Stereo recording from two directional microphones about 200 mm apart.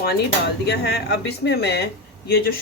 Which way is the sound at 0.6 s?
55° left (ahead or behind).